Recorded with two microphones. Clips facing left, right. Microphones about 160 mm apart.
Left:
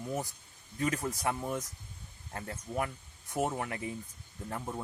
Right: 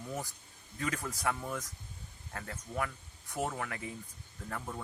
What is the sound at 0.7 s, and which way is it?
Speech, 25° left (ahead or behind).